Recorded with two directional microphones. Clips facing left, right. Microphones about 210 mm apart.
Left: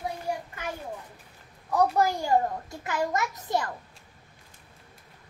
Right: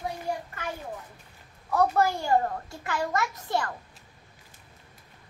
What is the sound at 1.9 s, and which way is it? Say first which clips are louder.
A child's voice: even; 15° left (ahead or behind).